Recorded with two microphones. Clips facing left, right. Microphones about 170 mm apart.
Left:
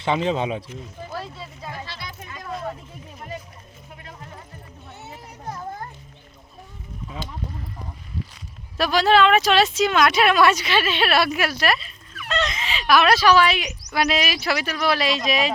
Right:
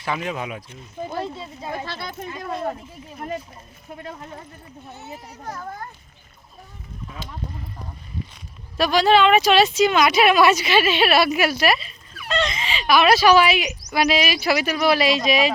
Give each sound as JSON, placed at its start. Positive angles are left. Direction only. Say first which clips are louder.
{"t": 0.0, "sound": "speech", "louder": "left 5 dB", "side_deg": 25}
{"t": 1.0, "sound": "speech", "louder": "right 7 dB", "side_deg": -25}
{"t": 1.7, "sound": "speech", "louder": "right 6 dB", "side_deg": -50}
{"t": 8.8, "sound": "speech", "louder": "right 1 dB", "side_deg": 0}